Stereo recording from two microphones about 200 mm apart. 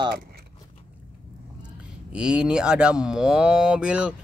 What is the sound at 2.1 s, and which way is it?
Speech, 5° right (ahead or behind).